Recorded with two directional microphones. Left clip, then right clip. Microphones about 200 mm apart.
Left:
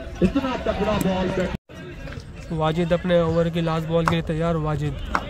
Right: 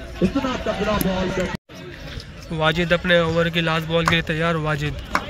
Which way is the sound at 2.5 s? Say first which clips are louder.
Right 3 dB; 10° left (ahead or behind).